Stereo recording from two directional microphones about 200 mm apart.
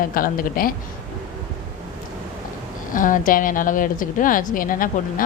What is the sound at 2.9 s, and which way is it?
Speech, 40° left (ahead or behind).